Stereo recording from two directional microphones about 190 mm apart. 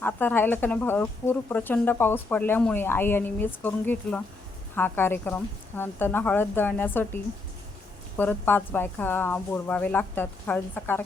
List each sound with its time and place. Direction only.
0.0 s speech: 10° left (ahead or behind)